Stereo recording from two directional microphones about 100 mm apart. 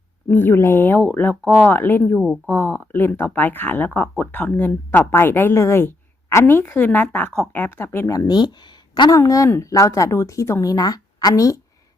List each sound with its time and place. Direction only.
0.3 s speech: 20° left (ahead or behind)
8.1 s a woman's voice: 40° left (ahead or behind)